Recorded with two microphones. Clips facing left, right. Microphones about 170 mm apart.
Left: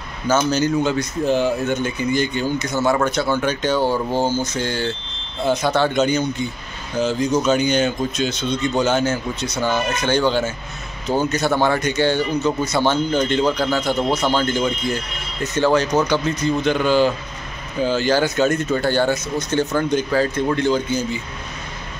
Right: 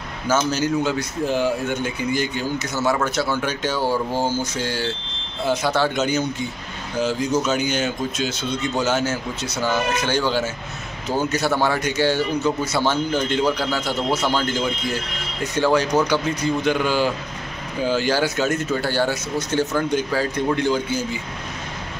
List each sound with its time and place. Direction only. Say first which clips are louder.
0.5 s speech: left 3 dB; 5° right (ahead or behind)
3.8 s speech: left 2 dB; 20° left (ahead or behind)
4.2 s speech: left 2 dB; 10° right (ahead or behind)